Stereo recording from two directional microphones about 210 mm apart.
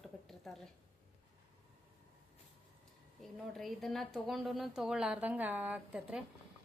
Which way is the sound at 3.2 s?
Centre (ahead or behind).